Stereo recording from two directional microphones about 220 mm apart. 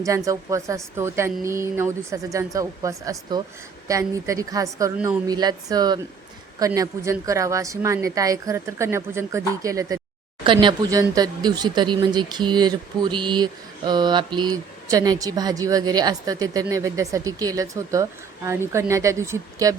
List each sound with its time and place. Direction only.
0.3 s speech: 15° right (ahead or behind)